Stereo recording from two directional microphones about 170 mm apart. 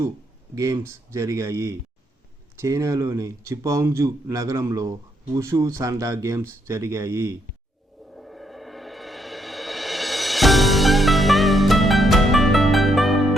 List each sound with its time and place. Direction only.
0.5 s speech: 20° right (ahead or behind)
8.1 s music: centre (ahead or behind)